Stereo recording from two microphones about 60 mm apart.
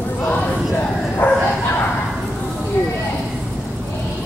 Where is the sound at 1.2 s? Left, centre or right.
Left.